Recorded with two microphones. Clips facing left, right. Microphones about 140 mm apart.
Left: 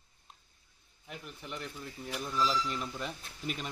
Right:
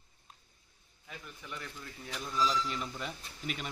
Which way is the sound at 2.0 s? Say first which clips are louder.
Even; 5° left (ahead or behind).